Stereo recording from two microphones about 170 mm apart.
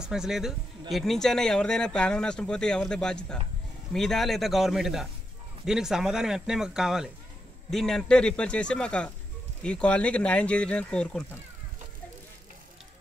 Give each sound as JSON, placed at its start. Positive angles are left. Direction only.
{"t": 0.0, "sound": "speech", "side_deg": -5}